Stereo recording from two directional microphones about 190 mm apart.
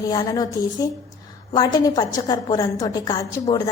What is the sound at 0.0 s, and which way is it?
A woman's voice, 20° left (ahead or behind).